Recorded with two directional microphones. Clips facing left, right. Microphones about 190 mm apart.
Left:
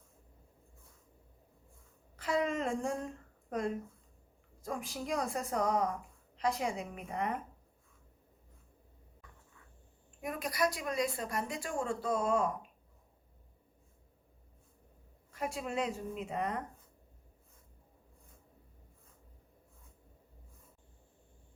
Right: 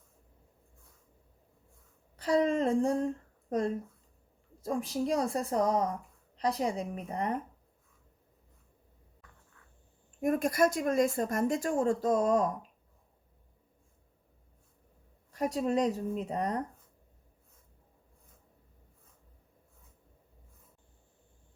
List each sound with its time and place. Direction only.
2.1 s speech: 35° right (ahead or behind)
4.6 s speech: 30° right (ahead or behind)
10.2 s a woman's voice: 45° right (ahead or behind)
15.3 s speech: 40° right (ahead or behind)